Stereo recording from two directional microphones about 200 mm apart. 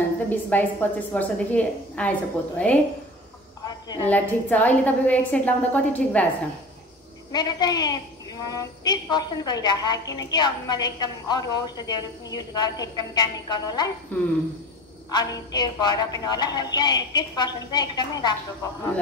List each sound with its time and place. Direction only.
0.3 s a woman's voice: 10° left (ahead or behind)
3.6 s a sound: 20° left (ahead or behind)
4.1 s a woman's voice: 10° left (ahead or behind)
7.3 s a woman's voice: 20° left (ahead or behind)
14.1 s a woman's voice: 10° left (ahead or behind)
15.0 s a woman's voice: 20° left (ahead or behind)